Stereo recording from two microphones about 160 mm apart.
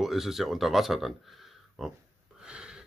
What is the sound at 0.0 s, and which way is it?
Speech, centre (ahead or behind).